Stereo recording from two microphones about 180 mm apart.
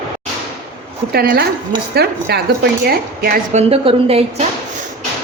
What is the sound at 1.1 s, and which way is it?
A woman's voice, 60° right (ahead or behind).